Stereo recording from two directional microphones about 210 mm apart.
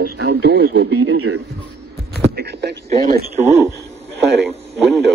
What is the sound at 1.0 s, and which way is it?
Speech, 80° right.